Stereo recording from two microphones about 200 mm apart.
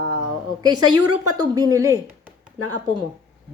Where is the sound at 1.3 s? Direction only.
20° right (ahead or behind).